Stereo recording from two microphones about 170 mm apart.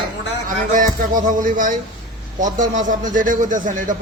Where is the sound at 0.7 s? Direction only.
50° right (ahead or behind).